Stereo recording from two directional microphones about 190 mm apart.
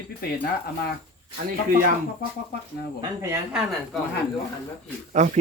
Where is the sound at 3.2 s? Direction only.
15° right (ahead or behind).